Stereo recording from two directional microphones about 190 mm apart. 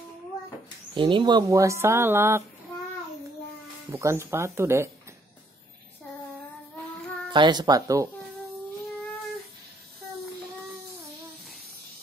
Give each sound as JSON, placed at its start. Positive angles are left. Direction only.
{"t": 0.9, "sound": "speech", "side_deg": -25}
{"t": 3.9, "sound": "speech", "side_deg": -15}
{"t": 7.2, "sound": "speech", "side_deg": -25}